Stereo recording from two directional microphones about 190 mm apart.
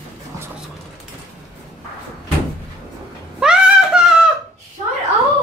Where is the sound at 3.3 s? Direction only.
5° right (ahead or behind).